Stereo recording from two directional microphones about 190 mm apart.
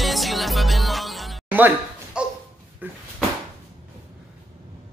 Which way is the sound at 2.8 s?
10° right (ahead or behind).